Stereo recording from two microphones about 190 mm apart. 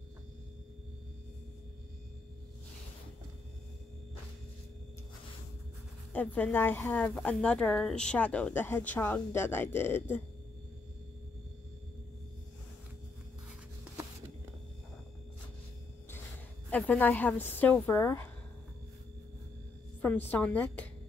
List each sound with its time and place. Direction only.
6.1 s a woman's voice: 10° left (ahead or behind)
16.7 s a woman's voice: 5° left (ahead or behind)
20.2 s a woman's voice: 10° left (ahead or behind)